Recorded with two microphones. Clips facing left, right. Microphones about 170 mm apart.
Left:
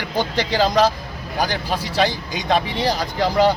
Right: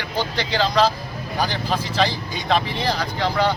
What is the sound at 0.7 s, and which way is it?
Speech, 15° left (ahead or behind).